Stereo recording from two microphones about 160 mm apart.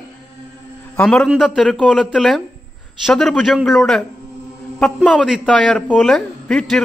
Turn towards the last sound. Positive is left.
turn(degrees=5)  # may be behind; listen again after turning